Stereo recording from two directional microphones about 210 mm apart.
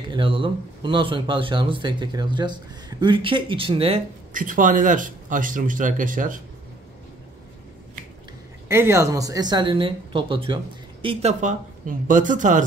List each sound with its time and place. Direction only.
0.1 s speech: 25° right (ahead or behind)
4.3 s speech: 40° right (ahead or behind)
8.6 s speech: 10° right (ahead or behind); by 12.6 s 35° right (ahead or behind)